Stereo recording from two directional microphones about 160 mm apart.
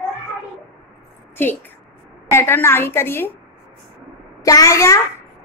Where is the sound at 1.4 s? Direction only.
15° left (ahead or behind).